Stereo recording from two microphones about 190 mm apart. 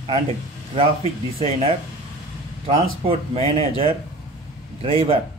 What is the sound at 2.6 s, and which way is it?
A man's voice, 30° right (ahead or behind).